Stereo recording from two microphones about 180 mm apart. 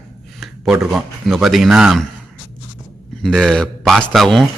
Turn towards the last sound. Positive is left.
turn(degrees=0)  # may be behind; listen again after turning